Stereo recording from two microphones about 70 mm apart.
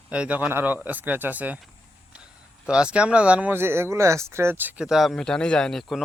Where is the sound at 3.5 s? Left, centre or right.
Right.